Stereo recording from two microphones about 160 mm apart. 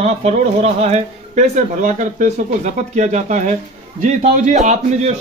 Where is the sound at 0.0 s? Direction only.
40° right (ahead or behind).